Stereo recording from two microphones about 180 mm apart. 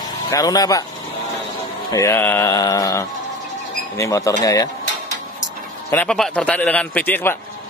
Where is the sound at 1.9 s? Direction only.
15° left (ahead or behind).